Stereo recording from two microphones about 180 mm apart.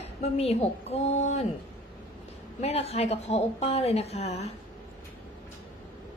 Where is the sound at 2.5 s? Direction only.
35° left (ahead or behind).